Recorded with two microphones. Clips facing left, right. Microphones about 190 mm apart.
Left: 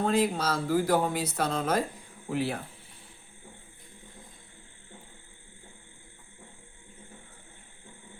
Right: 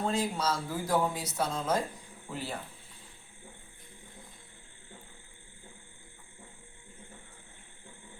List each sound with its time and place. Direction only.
0.0 s speech: 60° left (ahead or behind)